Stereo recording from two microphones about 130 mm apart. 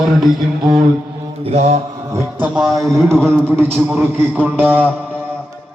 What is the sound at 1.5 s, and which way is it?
Mantra, 60° right (ahead or behind).